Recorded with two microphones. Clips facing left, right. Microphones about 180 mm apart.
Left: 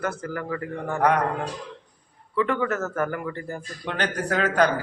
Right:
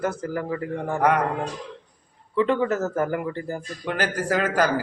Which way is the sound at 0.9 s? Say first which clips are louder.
Even; 5° right (ahead or behind).